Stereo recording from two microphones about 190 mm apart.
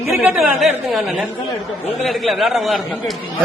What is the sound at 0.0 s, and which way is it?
Chatter, 15° right (ahead or behind).